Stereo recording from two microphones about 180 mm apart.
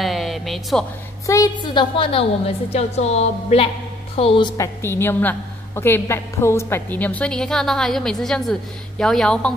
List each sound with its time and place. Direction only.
0.0 s a sound: centre (ahead or behind)
1.2 s a woman's voice: 20° left (ahead or behind)
4.8 s a woman's voice: 15° left (ahead or behind)